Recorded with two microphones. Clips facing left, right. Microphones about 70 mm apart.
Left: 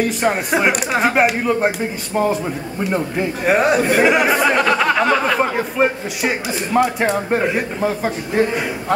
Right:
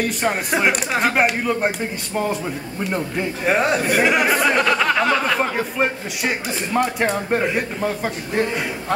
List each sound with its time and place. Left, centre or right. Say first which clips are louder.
0.0 s speech: left 3 dB; centre